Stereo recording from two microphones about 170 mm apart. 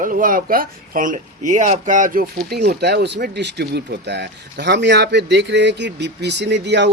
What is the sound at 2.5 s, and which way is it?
Speech, 70° right (ahead or behind).